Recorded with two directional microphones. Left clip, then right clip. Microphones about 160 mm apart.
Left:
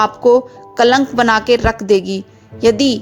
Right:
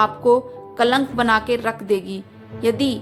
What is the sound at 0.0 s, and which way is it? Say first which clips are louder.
Speech: left 5 dB; 40° left (ahead or behind).